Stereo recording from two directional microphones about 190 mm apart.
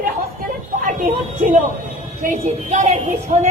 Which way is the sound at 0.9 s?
45° right (ahead or behind).